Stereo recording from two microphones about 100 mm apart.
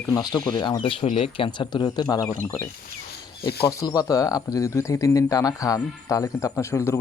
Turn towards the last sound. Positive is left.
turn(degrees=25)  # may be behind; listen again after turning